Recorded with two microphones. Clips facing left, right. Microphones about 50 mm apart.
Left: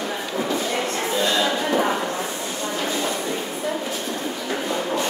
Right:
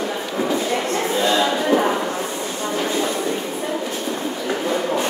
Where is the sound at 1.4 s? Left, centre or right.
Centre.